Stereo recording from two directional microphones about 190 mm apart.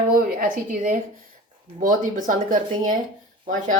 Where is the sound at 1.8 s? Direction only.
45° right (ahead or behind).